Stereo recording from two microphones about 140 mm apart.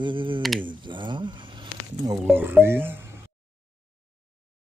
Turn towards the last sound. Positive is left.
turn(degrees=-15)  # may be behind; listen again after turning